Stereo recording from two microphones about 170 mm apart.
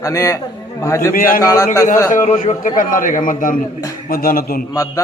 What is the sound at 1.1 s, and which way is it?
Speech, 55° left (ahead or behind).